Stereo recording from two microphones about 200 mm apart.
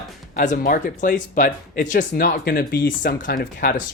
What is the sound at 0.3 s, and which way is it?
Speech, 45° left (ahead or behind).